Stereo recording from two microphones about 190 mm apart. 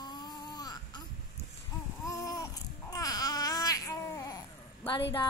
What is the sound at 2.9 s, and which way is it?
Babbling, 20° left (ahead or behind).